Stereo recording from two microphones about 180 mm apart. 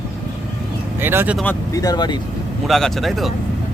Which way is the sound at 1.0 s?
10° right (ahead or behind).